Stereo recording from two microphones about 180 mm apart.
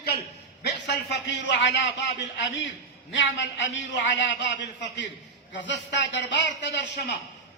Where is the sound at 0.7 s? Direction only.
75° left (ahead or behind).